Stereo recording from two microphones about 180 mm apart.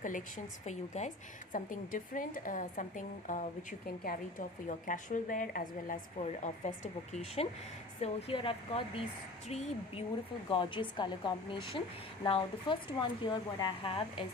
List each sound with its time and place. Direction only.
0.0 s a woman's voice: 45° left (ahead or behind); by 14.3 s 30° left (ahead or behind)